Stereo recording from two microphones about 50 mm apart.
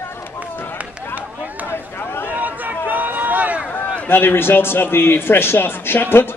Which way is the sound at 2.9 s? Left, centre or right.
Right.